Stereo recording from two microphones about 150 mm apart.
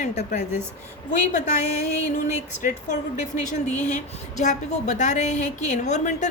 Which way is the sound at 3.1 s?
50° left (ahead or behind).